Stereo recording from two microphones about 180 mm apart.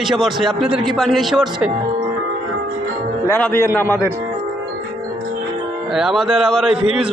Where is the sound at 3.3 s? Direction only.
15° left (ahead or behind).